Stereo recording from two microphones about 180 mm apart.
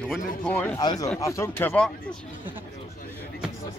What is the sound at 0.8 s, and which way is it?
Speech, 25° left (ahead or behind).